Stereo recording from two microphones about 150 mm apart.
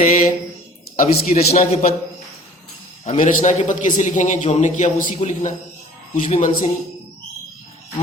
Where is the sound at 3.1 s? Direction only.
55° left (ahead or behind).